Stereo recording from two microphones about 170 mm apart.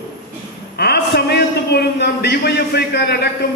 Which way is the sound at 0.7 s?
70° left (ahead or behind).